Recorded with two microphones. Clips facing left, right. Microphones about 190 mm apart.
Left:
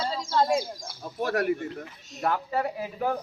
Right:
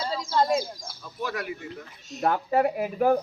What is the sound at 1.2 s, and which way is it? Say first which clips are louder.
Speech: left 6 dB; 65° left (ahead or behind).